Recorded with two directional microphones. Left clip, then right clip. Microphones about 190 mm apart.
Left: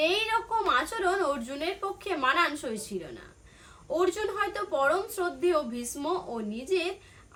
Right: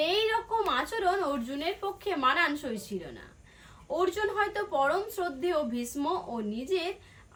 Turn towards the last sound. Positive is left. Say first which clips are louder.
# left 2 dB
turn(degrees=15)  # may be behind; listen again after turning